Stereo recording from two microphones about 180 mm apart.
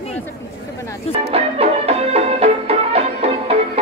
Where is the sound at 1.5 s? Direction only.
35° right (ahead or behind).